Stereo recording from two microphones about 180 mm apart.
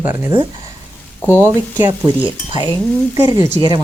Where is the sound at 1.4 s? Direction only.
15° right (ahead or behind).